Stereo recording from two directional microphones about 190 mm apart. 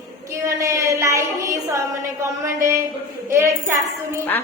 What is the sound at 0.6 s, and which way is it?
Child singing, 15° right (ahead or behind).